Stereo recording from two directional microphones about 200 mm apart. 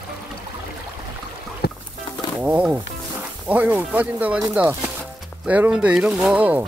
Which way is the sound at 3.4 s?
10° right (ahead or behind).